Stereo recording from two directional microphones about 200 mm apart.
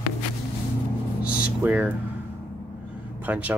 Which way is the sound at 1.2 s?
10° right (ahead or behind).